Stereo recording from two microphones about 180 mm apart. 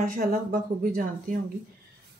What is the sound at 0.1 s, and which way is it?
A woman's voice, 50° right (ahead or behind).